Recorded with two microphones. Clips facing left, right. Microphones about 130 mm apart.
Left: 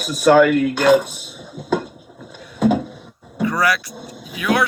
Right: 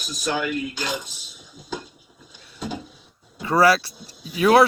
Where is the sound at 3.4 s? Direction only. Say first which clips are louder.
Right 2 dB; 30° right (ahead or behind).